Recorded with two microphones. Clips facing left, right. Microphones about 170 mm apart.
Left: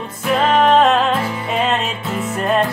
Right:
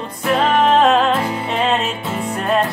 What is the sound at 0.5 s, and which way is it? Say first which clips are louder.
Music: left 1 dB; centre (ahead or behind).